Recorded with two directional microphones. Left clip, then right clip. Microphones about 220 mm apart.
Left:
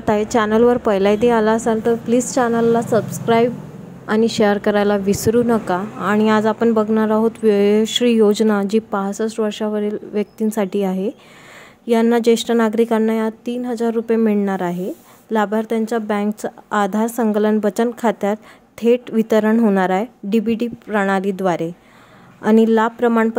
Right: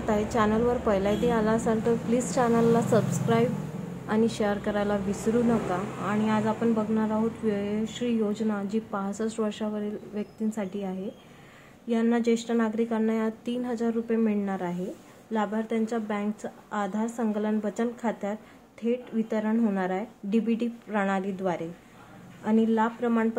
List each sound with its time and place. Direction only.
0.0 s a woman's voice: 35° left (ahead or behind)